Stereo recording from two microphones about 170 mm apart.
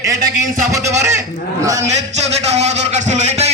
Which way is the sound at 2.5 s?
40° right (ahead or behind).